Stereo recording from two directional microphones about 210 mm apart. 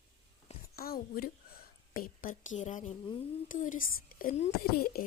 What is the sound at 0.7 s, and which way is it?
A woman's voice, 45° left (ahead or behind).